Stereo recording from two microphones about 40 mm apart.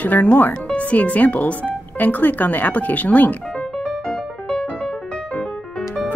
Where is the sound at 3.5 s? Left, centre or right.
Centre.